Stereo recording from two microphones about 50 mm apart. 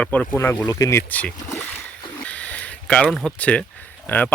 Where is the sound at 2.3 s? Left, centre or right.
Left.